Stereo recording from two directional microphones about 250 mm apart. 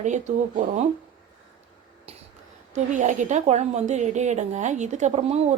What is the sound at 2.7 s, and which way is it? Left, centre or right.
A woman's voice, right.